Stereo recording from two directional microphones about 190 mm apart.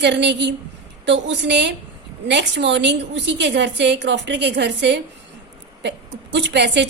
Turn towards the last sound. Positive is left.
turn(degrees=-65)  # may be behind; listen again after turning